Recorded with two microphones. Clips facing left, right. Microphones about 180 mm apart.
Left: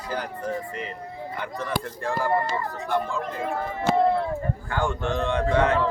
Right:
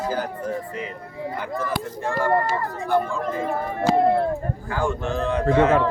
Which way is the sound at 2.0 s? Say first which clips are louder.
Right 3 dB; centre (ahead or behind).